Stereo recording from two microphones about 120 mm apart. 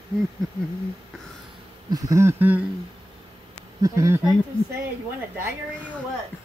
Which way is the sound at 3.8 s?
25° right (ahead or behind).